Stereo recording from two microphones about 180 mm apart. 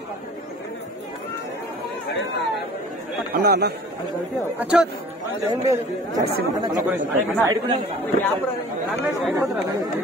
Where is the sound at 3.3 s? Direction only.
60° right (ahead or behind).